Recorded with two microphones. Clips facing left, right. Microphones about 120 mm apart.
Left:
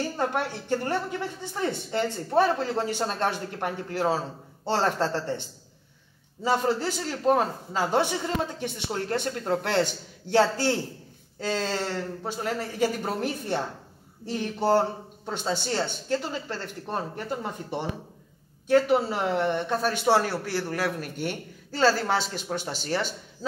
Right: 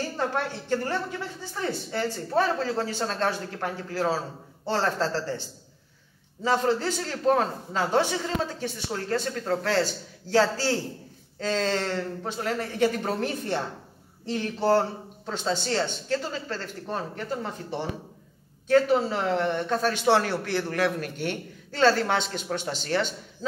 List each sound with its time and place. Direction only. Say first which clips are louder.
0.2 s a man's voice: right 1 dB; 15° left (ahead or behind)
6.4 s a man's voice: right 1 dB; 10° left (ahead or behind)